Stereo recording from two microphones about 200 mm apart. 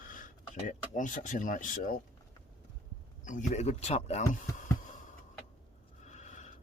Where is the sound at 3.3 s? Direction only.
35° left (ahead or behind).